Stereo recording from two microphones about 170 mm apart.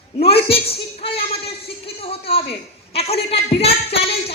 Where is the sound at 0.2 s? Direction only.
35° left (ahead or behind).